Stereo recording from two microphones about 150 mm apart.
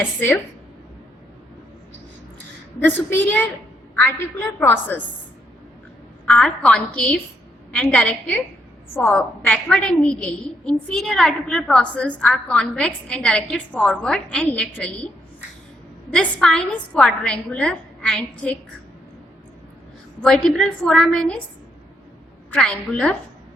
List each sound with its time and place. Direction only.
2.8 s a woman's voice: 10° left (ahead or behind)
4.6 s a woman's voice: 15° left (ahead or behind)
6.2 s a woman's voice: 5° left (ahead or behind)
16.1 s a woman's voice: centre (ahead or behind)
20.2 s a woman's voice: centre (ahead or behind)
22.5 s a woman's voice: 5° left (ahead or behind)